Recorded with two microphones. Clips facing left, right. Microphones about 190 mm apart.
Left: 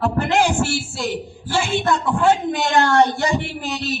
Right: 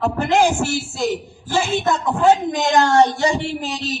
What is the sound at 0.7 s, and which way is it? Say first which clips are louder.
Speech: right 3 dB; 45° right (ahead or behind).